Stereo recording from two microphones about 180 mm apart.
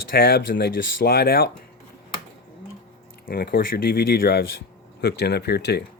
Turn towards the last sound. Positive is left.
turn(degrees=65)  # may be behind; listen again after turning